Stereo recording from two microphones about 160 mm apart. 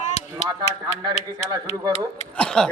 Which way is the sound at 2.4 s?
5° left (ahead or behind).